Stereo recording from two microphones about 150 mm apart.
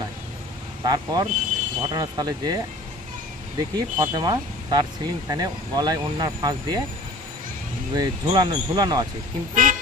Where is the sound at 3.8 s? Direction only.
25° right (ahead or behind).